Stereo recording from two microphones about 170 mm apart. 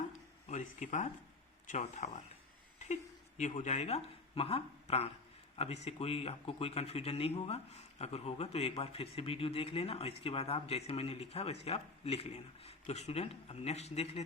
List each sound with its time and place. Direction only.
0.4 s speech: 45° left (ahead or behind)